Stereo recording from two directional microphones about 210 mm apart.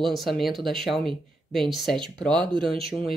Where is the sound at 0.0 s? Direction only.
Centre (ahead or behind).